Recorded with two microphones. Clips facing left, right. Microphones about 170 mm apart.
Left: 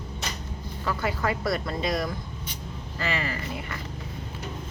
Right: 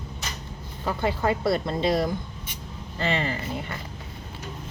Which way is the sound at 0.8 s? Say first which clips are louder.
Right 3 dB; 25° right (ahead or behind).